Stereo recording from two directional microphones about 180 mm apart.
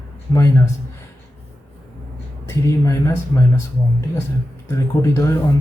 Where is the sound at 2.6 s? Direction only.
20° left (ahead or behind).